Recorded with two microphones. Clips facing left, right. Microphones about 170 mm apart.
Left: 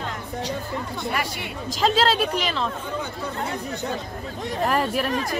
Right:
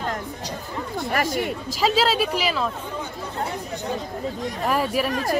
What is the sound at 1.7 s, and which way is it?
A woman's voice, 5° right (ahead or behind).